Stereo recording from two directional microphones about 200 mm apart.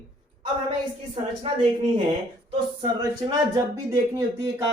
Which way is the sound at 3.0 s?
20° right (ahead or behind).